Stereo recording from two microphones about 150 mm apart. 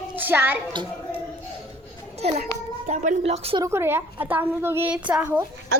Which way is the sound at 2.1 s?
45° right (ahead or behind).